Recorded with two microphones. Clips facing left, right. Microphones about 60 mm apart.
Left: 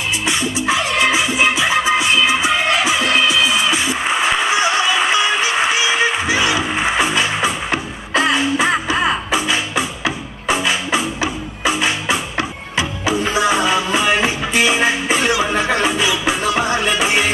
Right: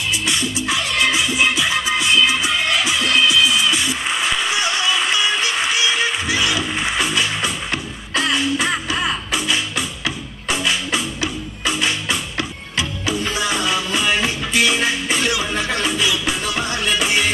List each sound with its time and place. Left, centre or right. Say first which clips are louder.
0.3 s music: left 6 dB; centre
8.9 s music: left 5 dB; left
9.3 s music: left 3 dB; centre